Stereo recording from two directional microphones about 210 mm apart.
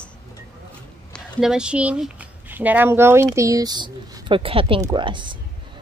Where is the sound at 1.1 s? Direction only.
Centre (ahead or behind).